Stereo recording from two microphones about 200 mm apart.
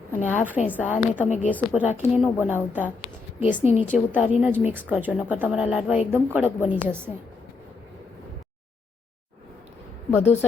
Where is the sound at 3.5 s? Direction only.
35° left (ahead or behind).